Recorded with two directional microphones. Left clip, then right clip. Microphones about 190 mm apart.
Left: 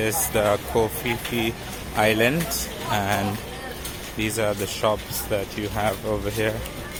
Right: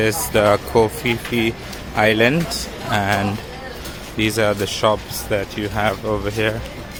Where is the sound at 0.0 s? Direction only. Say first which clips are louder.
Right 6 dB; 25° right (ahead or behind).